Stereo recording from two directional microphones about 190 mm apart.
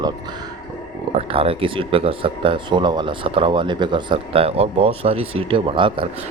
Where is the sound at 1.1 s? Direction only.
30° right (ahead or behind).